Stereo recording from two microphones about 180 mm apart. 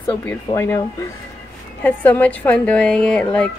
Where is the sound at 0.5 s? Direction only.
20° left (ahead or behind).